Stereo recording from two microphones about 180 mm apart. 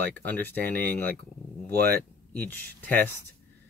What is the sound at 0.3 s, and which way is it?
Speech, 10° left (ahead or behind).